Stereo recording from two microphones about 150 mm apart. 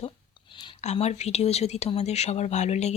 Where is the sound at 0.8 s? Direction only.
45° left (ahead or behind).